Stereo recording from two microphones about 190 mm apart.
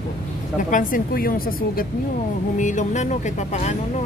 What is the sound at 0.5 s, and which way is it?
A woman's voice, 45° left (ahead or behind).